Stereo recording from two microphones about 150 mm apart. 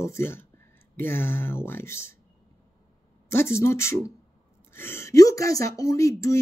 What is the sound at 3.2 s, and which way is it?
Speech, 15° left (ahead or behind).